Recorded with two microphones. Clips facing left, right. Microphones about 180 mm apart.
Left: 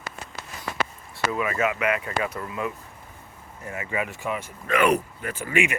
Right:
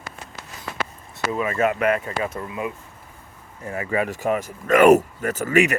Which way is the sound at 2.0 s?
25° right (ahead or behind).